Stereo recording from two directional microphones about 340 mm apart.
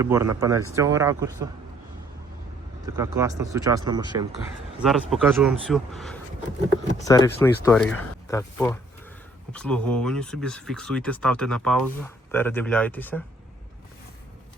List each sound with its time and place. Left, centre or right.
0.0 s speech: centre
2.8 s speech: centre
4.8 s speech: centre